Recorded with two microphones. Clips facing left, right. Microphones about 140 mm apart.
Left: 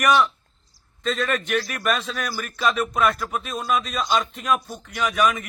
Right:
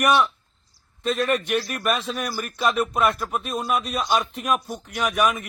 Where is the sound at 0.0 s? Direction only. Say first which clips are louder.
Even; centre (ahead or behind).